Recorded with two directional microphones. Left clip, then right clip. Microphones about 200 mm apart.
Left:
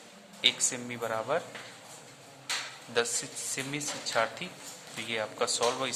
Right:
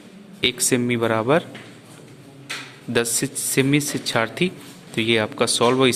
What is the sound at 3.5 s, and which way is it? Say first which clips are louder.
Speech: right 16 dB; 25° right (ahead or behind).